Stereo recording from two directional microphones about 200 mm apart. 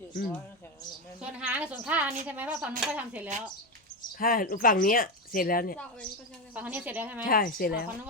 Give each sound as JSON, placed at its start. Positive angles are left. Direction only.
{"t": 1.2, "sound": "a woman's voice", "side_deg": -5}
{"t": 4.2, "sound": "speech", "side_deg": 45}
{"t": 6.5, "sound": "a woman's voice", "side_deg": -5}
{"t": 7.3, "sound": "speech", "side_deg": 45}